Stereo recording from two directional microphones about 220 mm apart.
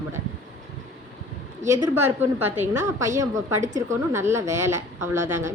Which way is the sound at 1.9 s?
10° right (ahead or behind).